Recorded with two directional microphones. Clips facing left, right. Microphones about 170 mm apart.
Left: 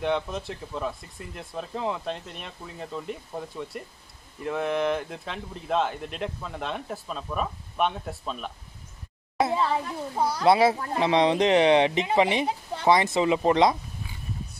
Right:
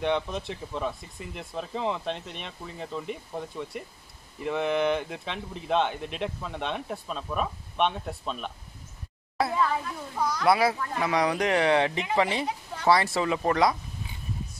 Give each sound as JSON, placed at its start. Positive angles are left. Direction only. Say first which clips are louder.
{"t": 0.0, "sound": "speech", "louder": "even", "side_deg": 0}
{"t": 9.4, "sound": "speech", "louder": "left 2 dB", "side_deg": 25}